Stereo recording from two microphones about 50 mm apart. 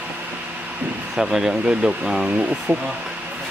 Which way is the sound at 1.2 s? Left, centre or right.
Centre.